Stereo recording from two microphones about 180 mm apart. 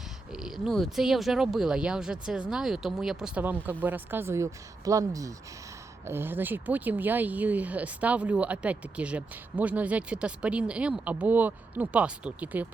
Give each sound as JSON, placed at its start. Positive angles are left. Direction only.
{"t": 0.3, "sound": "speech", "side_deg": -5}